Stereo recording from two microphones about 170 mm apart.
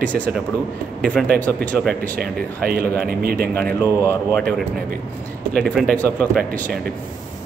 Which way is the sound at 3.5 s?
10° left (ahead or behind).